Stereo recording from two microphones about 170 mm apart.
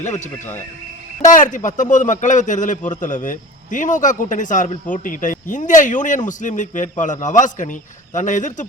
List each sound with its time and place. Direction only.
0.0 s a man's voice: 45° left (ahead or behind)